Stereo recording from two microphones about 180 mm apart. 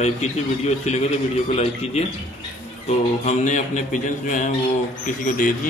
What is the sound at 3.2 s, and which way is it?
Speech, 45° left (ahead or behind).